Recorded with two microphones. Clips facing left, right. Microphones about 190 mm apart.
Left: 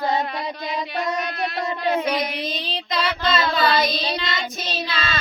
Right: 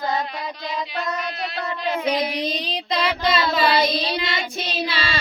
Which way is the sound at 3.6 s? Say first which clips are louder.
Right 1 dB; 30° right (ahead or behind).